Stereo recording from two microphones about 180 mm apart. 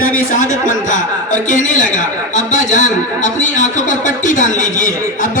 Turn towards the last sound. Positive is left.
turn(degrees=45)  # may be behind; listen again after turning